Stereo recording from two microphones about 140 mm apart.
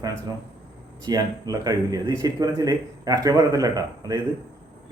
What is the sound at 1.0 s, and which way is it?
Speech, 25° right (ahead or behind).